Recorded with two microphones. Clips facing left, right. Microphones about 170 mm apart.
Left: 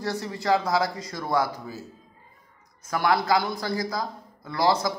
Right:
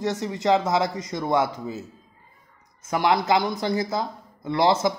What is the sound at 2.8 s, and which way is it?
Speech, 20° right (ahead or behind).